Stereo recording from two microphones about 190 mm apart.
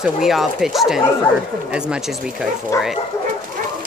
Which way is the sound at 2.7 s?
15° left (ahead or behind).